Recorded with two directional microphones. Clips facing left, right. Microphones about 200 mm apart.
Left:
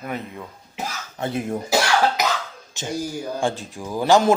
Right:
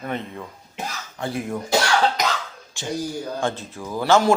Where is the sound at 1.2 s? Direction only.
25° left (ahead or behind).